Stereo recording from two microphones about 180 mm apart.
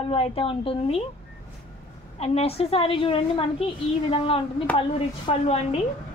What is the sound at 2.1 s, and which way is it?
A woman's voice, 35° left (ahead or behind).